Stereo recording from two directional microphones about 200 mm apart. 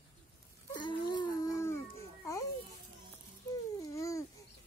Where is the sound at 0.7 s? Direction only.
20° left (ahead or behind).